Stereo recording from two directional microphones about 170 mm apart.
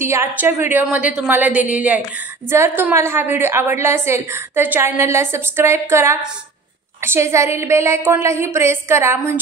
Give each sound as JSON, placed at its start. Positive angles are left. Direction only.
{"t": 0.0, "sound": "a woman's voice", "side_deg": -15}